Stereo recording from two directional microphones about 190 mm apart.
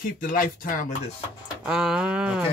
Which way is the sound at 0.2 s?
45° left (ahead or behind).